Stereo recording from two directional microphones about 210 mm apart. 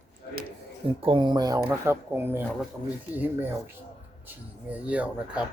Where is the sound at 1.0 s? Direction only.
25° right (ahead or behind).